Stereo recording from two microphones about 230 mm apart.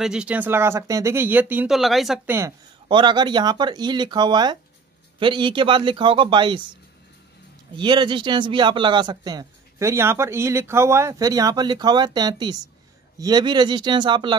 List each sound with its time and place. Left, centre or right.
0.0 s speech: centre
2.9 s speech: right
7.7 s speech: centre